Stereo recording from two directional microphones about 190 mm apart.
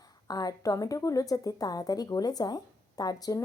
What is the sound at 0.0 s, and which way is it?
A woman's voice, 20° left (ahead or behind).